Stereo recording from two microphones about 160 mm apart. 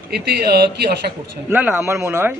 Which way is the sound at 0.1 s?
80° right.